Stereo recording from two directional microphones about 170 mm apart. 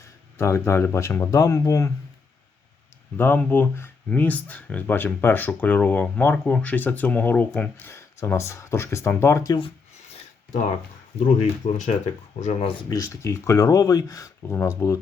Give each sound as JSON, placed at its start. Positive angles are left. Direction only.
{"t": 0.0, "sound": "speech", "side_deg": 15}
{"t": 3.2, "sound": "speech", "side_deg": 10}
{"t": 10.1, "sound": "a sound", "side_deg": 35}
{"t": 11.3, "sound": "speech", "side_deg": 45}
{"t": 12.9, "sound": "speech", "side_deg": 15}